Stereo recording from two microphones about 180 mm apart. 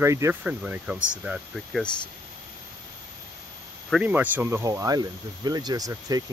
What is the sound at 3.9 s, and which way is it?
Speech, 10° right (ahead or behind).